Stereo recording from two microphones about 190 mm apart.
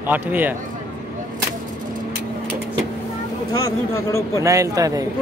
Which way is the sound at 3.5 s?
15° left (ahead or behind).